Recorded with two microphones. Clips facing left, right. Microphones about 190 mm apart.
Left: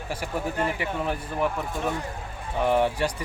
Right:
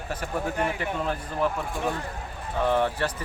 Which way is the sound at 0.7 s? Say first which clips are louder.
Even; 15° left (ahead or behind).